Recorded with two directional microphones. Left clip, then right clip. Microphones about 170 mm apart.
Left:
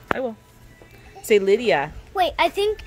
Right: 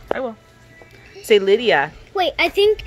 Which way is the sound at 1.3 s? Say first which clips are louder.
Right 3 dB; 15° left (ahead or behind).